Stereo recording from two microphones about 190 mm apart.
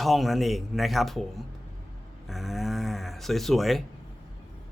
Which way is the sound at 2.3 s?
Centre (ahead or behind).